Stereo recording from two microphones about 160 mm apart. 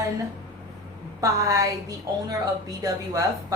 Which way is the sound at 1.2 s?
20° right (ahead or behind).